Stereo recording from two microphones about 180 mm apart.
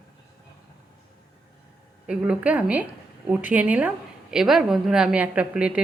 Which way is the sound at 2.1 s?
5° right (ahead or behind).